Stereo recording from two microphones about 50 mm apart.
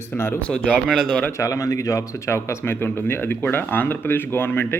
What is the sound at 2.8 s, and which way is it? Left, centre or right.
Speech, left.